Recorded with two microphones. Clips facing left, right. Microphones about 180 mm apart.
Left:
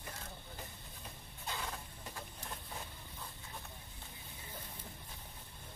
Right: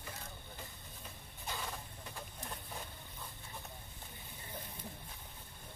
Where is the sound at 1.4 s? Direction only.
15° right (ahead or behind).